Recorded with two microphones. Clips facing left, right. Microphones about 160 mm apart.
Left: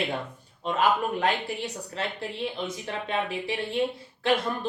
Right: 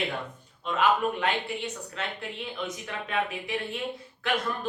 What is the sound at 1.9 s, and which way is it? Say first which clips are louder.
Speech: left 3 dB; 30° left (ahead or behind).